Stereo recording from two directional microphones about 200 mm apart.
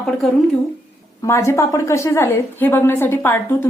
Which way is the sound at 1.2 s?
15° left (ahead or behind).